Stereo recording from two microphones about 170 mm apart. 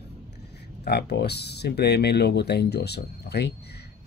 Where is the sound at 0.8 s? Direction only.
70° left (ahead or behind).